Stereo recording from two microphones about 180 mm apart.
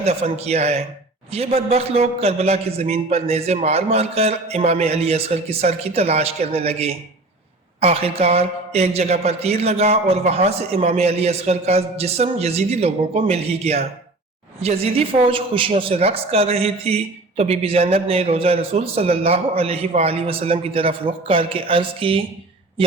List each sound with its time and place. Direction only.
0.0 s a woman's voice: 35° right (ahead or behind)